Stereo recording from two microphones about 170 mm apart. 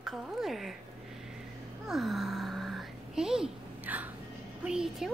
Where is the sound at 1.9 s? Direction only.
Centre (ahead or behind).